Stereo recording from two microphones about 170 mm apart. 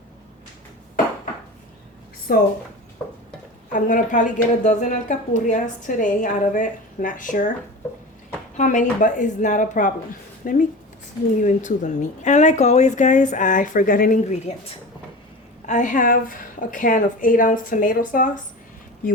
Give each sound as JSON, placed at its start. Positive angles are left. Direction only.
{"t": 2.3, "sound": "speech", "side_deg": 60}
{"t": 3.7, "sound": "a woman's voice", "side_deg": 50}
{"t": 8.5, "sound": "a woman's voice", "side_deg": 50}
{"t": 15.6, "sound": "a woman's voice", "side_deg": 45}